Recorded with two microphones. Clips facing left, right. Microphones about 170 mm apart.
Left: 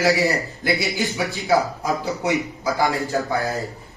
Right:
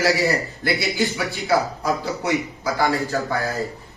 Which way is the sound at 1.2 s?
Centre (ahead or behind).